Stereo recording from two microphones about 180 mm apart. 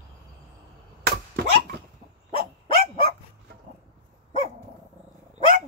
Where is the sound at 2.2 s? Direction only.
35° left (ahead or behind).